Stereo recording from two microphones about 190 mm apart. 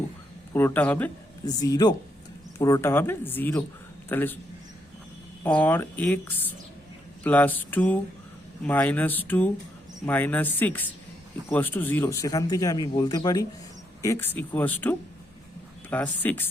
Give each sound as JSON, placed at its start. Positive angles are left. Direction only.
{"t": 0.5, "sound": "speech", "side_deg": 10}
{"t": 1.5, "sound": "speech", "side_deg": 20}
{"t": 5.4, "sound": "speech", "side_deg": 10}